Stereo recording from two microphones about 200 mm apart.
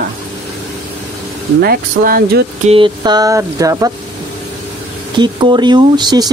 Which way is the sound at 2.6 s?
25° right (ahead or behind).